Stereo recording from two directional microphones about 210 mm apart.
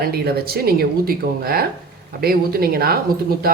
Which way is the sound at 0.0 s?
45° right (ahead or behind).